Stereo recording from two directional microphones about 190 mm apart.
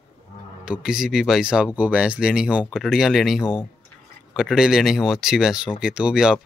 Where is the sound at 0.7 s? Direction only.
5° right (ahead or behind).